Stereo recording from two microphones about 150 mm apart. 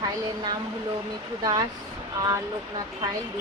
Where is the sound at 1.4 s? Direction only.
25° right (ahead or behind).